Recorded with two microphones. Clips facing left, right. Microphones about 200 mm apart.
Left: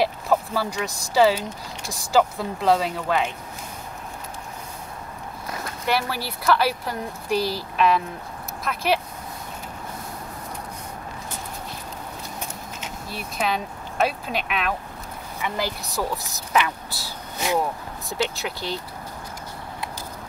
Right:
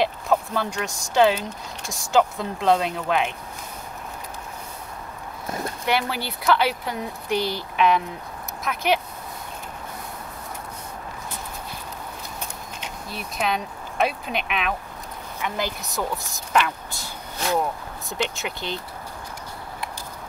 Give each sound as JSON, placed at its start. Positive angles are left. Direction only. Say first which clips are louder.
{"t": 0.0, "sound": "speech", "louder": "even", "side_deg": 5}
{"t": 5.9, "sound": "speech", "louder": "even", "side_deg": 0}
{"t": 12.8, "sound": "speech", "louder": "even", "side_deg": 0}
{"t": 18.1, "sound": "speech", "louder": "left 1 dB", "side_deg": 0}